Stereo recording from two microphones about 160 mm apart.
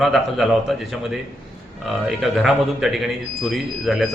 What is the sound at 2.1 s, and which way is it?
A man's voice, centre (ahead or behind).